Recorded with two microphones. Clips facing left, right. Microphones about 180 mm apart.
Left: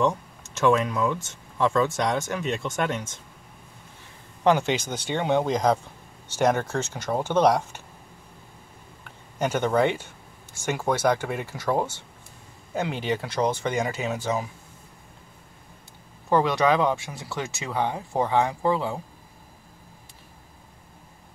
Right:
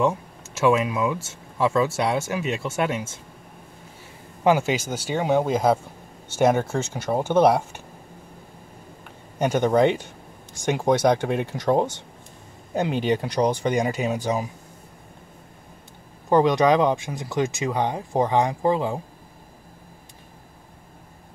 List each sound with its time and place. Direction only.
0.0 s speech: 5° right (ahead or behind)
4.4 s speech: 10° right (ahead or behind)
9.4 s speech: 15° right (ahead or behind)
16.3 s speech: 15° right (ahead or behind)